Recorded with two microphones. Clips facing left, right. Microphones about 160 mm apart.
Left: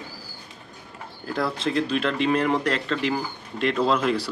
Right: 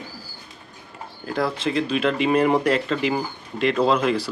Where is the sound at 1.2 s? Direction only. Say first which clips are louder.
Right 2 dB; centre (ahead or behind).